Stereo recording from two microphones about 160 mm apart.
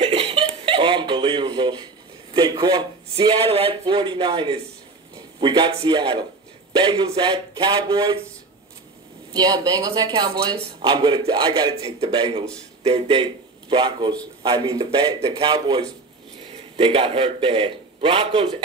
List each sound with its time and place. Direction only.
0.0 s a sound: 35° right (ahead or behind)
2.3 s speech: 25° right (ahead or behind)
9.3 s a man's voice: 25° right (ahead or behind)
15.1 s a man's voice: 35° right (ahead or behind)
16.7 s a man's voice: 35° right (ahead or behind)